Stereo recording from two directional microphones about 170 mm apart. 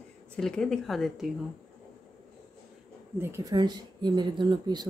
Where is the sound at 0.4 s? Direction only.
5° left (ahead or behind).